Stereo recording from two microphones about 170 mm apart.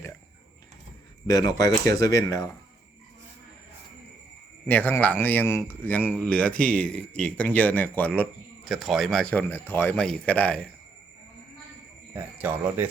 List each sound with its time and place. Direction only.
1.3 s speech: 25° left (ahead or behind)
4.7 s speech: 10° left (ahead or behind)
12.1 s speech: 10° right (ahead or behind)